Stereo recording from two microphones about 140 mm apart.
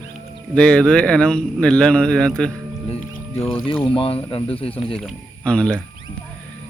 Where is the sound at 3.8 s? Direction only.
40° left (ahead or behind).